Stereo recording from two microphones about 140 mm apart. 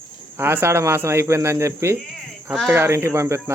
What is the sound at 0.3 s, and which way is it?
Speech, 15° right (ahead or behind).